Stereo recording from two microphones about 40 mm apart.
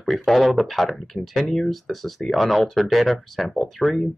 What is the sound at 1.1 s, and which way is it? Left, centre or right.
Speech, left.